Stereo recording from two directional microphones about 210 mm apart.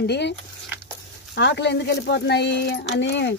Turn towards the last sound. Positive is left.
turn(degrees=60)  # may be behind; listen again after turning